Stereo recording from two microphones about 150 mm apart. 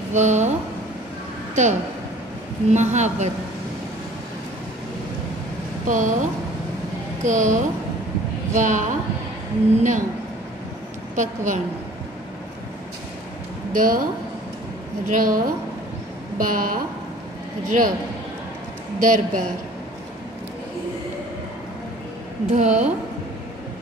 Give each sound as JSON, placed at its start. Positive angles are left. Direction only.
{"t": 0.1, "sound": "a man's voice", "side_deg": -50}
{"t": 1.5, "sound": "a woman's voice", "side_deg": -50}
{"t": 5.9, "sound": "a woman's voice", "side_deg": -60}
{"t": 7.2, "sound": "a woman's voice", "side_deg": -55}
{"t": 11.1, "sound": "a woman's voice", "side_deg": -55}
{"t": 13.7, "sound": "a woman's voice", "side_deg": -70}
{"t": 15.0, "sound": "a woman's voice", "side_deg": -65}
{"t": 18.9, "sound": "a woman's voice", "side_deg": -60}
{"t": 22.5, "sound": "a man's voice", "side_deg": -50}